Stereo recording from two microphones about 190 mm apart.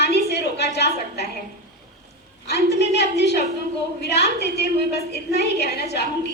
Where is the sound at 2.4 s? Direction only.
60° left (ahead or behind).